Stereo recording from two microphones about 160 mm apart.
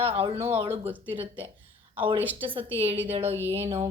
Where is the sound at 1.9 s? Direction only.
30° right (ahead or behind).